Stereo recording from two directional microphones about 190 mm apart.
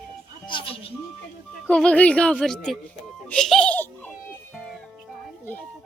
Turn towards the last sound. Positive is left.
turn(degrees=10)  # may be behind; listen again after turning